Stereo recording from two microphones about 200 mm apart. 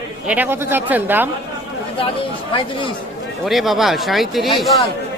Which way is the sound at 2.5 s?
25° left (ahead or behind).